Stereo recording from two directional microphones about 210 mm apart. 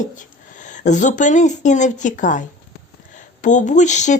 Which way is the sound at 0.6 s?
35° left (ahead or behind).